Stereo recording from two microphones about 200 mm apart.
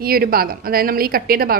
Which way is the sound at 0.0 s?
50° right (ahead or behind).